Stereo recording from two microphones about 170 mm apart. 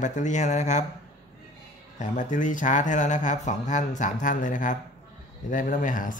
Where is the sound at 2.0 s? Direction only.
45° left (ahead or behind).